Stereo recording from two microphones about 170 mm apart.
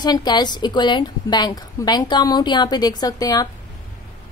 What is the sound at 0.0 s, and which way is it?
A woman's voice, 25° left (ahead or behind).